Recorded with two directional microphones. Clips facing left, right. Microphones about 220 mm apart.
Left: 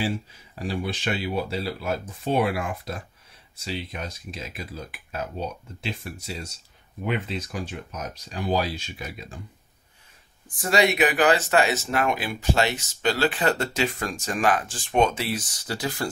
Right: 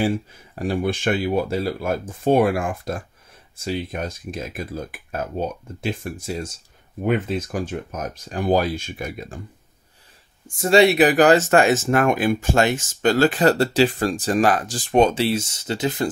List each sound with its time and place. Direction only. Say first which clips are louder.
0.0 s speech: right 6 dB; 50° right (ahead or behind)
10.6 s speech: right 7 dB; 30° right (ahead or behind)